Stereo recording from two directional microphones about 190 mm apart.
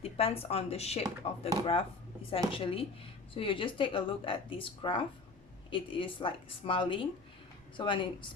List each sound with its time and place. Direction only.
0.0 s speech: 30° left (ahead or behind)